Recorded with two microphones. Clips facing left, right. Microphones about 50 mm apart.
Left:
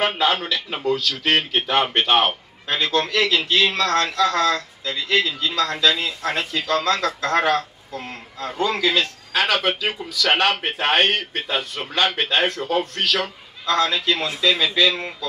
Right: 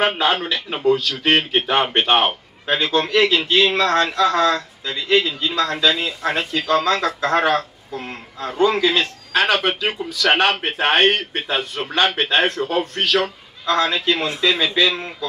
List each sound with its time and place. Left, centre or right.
0.7 s a man's voice: centre
2.2 s a man's voice: centre
14.9 s speech: centre